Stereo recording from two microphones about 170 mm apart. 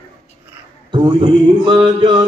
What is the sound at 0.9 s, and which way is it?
A man's voice, 25° right (ahead or behind).